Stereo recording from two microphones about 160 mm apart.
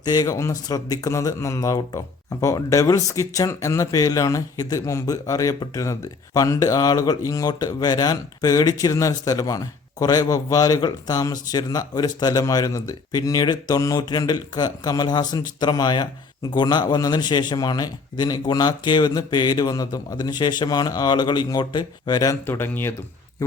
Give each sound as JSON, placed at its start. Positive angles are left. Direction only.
{"t": 0.0, "sound": "speech", "side_deg": 25}